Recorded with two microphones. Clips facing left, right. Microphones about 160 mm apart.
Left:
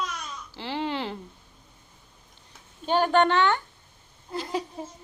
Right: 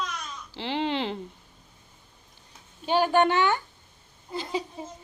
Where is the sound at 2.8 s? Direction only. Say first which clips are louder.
Even; 10° right (ahead or behind).